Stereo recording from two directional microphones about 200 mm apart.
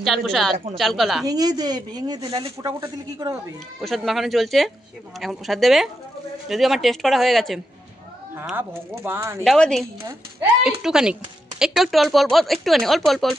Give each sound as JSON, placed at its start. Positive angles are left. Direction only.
{"t": 0.0, "sound": "speech", "side_deg": 0}
{"t": 1.2, "sound": "speech", "side_deg": -20}
{"t": 3.8, "sound": "speech", "side_deg": 0}
{"t": 8.4, "sound": "speech", "side_deg": -10}
{"t": 9.4, "sound": "speech", "side_deg": 0}